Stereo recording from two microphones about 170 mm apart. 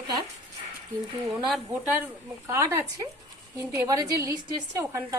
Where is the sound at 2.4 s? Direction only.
15° right (ahead or behind).